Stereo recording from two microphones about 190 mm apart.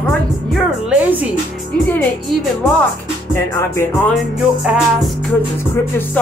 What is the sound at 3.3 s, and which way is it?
Music, 15° left (ahead or behind).